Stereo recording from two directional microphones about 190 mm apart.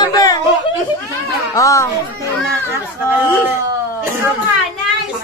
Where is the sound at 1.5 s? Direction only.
15° left (ahead or behind).